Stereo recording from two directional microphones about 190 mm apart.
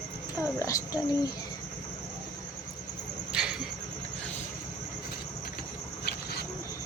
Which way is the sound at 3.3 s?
5° right (ahead or behind).